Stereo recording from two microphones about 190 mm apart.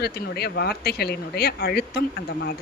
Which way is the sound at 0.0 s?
60° left (ahead or behind).